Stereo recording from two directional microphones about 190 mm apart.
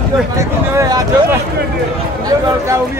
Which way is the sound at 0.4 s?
20° right (ahead or behind).